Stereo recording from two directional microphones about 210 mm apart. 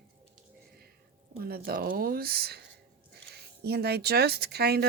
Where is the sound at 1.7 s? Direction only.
45° right (ahead or behind).